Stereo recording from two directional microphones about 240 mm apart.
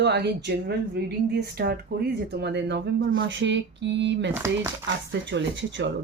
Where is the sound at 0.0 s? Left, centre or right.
Right.